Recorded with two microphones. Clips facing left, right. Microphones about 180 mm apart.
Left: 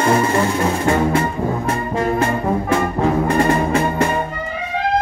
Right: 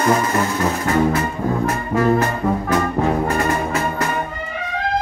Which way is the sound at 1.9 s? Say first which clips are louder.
Right 2 dB; 30° left (ahead or behind).